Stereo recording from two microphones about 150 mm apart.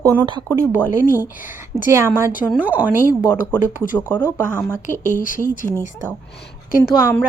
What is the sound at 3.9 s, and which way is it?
Speech, 15° left (ahead or behind).